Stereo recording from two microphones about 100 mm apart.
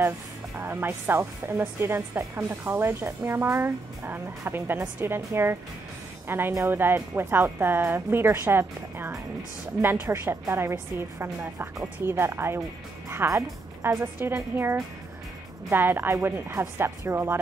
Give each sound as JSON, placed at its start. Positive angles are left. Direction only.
{"t": 0.6, "sound": "speech", "side_deg": -20}